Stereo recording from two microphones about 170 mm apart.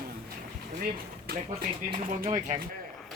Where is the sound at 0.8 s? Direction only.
60° right (ahead or behind).